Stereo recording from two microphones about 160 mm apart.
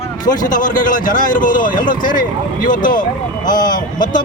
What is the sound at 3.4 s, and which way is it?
Speech, 25° left (ahead or behind).